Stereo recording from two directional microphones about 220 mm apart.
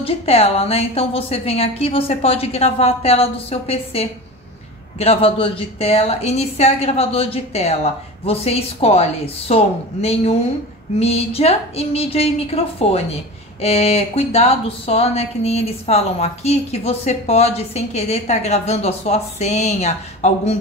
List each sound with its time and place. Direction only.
0.0 s a woman's voice: 30° left (ahead or behind)
11.0 s a woman's voice: 30° left (ahead or behind)